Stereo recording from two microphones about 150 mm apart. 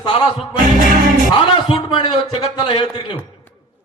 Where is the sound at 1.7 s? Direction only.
35° left (ahead or behind).